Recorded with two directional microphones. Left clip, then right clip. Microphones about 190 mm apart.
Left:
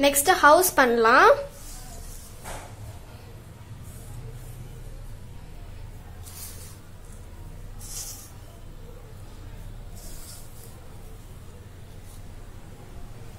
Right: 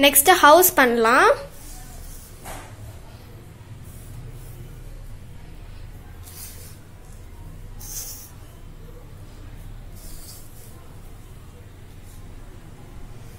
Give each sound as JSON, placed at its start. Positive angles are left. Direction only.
{"t": 0.0, "sound": "a woman's voice", "side_deg": -25}
{"t": 0.7, "sound": "a woman's voice", "side_deg": -10}